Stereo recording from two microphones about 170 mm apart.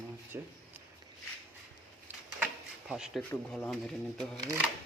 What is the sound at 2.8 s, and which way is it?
Rub, 5° right (ahead or behind).